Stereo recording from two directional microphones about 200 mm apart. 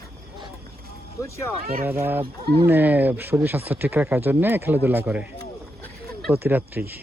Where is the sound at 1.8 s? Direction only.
10° right (ahead or behind).